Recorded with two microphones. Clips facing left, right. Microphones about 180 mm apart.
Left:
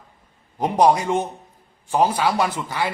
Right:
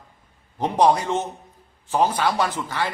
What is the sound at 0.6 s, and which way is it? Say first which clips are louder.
A man's voice: left 1 dB; 10° left (ahead or behind).